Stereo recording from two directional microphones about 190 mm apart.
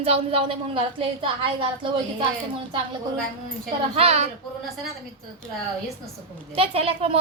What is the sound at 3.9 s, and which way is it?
Speech, 30° right (ahead or behind).